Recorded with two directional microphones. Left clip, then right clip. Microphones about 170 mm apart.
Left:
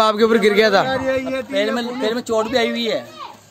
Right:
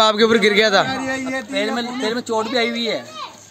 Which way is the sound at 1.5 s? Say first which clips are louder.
Left 2 dB; 40° left (ahead or behind).